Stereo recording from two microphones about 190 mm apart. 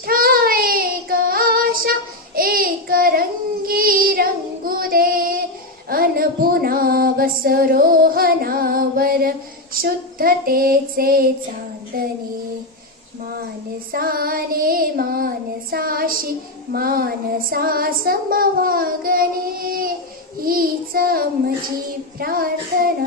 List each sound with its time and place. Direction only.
0.0 s child singing: 50° right (ahead or behind)
5.9 s a sound: 50° right (ahead or behind)
9.8 s child singing: 50° right (ahead or behind)
13.9 s child singing: 50° right (ahead or behind)